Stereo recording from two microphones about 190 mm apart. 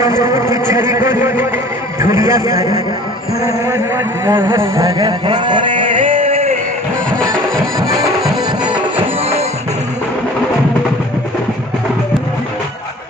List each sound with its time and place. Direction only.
0.2 s a man's voice: 15° right (ahead or behind)
3.4 s a sound: 15° right (ahead or behind); by 6.6 s 30° right (ahead or behind)
7.8 s music: 20° right (ahead or behind)
9.2 s music: 30° right (ahead or behind)